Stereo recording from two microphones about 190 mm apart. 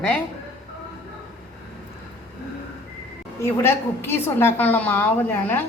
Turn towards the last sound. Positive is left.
turn(degrees=10)  # may be behind; listen again after turning